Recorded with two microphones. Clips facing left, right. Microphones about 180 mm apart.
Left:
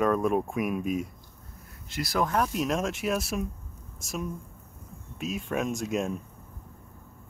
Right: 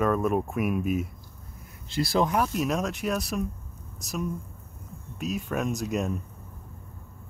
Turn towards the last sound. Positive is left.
turn(degrees=0)  # may be behind; listen again after turning